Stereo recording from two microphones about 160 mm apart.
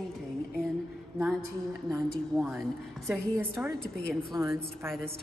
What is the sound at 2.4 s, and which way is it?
Speech, centre (ahead or behind).